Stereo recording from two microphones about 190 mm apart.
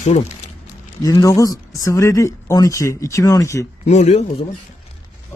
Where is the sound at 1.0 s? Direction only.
15° left (ahead or behind).